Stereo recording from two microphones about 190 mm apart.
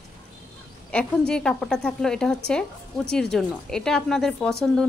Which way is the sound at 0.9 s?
5° left (ahead or behind).